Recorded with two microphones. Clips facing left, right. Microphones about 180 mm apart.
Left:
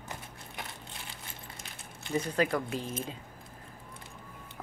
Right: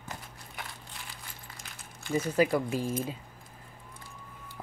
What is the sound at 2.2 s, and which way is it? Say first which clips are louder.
Speech: right 4 dB; 5° right (ahead or behind).